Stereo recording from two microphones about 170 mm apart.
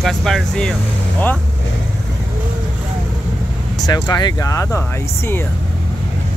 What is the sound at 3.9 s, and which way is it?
Speech, 25° left (ahead or behind).